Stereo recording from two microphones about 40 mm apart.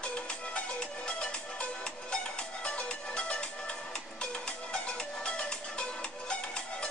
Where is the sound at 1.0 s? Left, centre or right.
Left.